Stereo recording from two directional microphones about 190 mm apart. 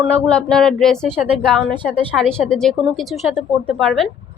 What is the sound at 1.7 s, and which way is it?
Speech, 25° right (ahead or behind).